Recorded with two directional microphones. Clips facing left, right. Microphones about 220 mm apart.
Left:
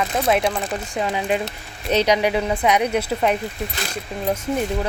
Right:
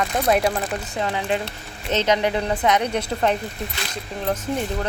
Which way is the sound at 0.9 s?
15° left (ahead or behind).